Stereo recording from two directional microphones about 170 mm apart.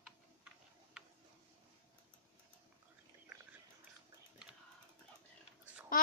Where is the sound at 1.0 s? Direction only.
5° right (ahead or behind).